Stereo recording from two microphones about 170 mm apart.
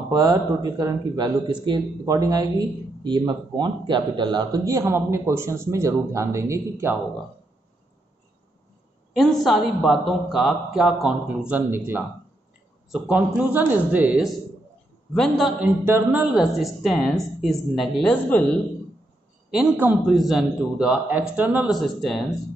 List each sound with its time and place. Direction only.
0.1 s speech: 20° right (ahead or behind)
9.1 s speech: centre (ahead or behind)
15.8 s speech: 10° right (ahead or behind); by 18.4 s 5° left (ahead or behind)
19.5 s speech: 5° right (ahead or behind)